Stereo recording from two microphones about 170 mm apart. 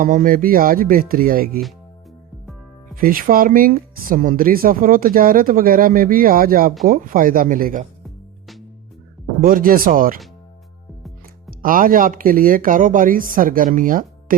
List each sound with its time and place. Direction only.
0.0 s speech: 55° right (ahead or behind)
2.9 s speech: 55° right (ahead or behind)
9.4 s speech: 55° right (ahead or behind)
11.6 s speech: 55° right (ahead or behind)